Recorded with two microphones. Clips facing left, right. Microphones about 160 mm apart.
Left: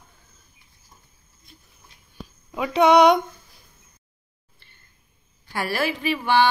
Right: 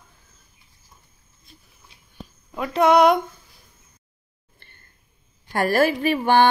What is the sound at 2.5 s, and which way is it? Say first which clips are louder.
Speech: left 1 dB; centre (ahead or behind).